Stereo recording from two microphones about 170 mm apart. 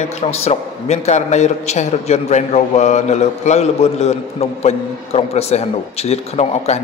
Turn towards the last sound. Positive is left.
turn(degrees=40)  # may be behind; listen again after turning